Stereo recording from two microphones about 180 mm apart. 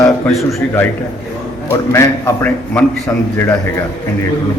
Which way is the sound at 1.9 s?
10° left (ahead or behind).